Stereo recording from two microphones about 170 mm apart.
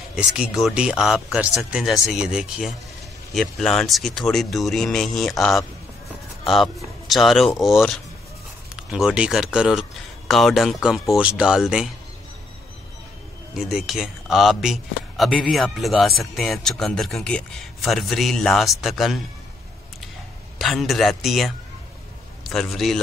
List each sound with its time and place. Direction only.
0.1 s speech: 5° right (ahead or behind)
13.6 s speech: centre (ahead or behind)
20.5 s a man's voice: centre (ahead or behind)